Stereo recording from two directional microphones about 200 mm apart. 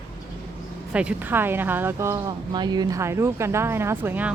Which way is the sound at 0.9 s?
5° right (ahead or behind).